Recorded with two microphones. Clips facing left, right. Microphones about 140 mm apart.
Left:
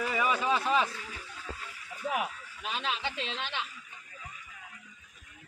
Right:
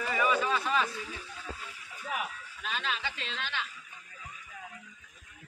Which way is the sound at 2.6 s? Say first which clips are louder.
Left 1 dB; 20° left (ahead or behind).